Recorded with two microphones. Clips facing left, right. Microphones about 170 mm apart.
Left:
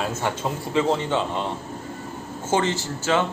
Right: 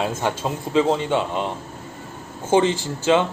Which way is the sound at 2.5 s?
15° right (ahead or behind).